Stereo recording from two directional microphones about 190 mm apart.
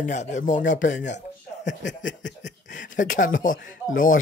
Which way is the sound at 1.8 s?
70° left (ahead or behind).